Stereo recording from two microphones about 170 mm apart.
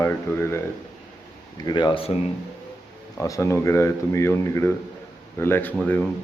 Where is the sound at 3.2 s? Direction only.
20° left (ahead or behind).